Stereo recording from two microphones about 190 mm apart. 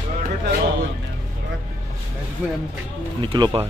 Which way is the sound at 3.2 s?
20° right (ahead or behind).